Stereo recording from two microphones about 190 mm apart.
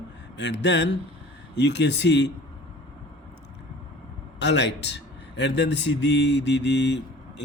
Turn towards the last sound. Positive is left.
turn(degrees=65)  # may be behind; listen again after turning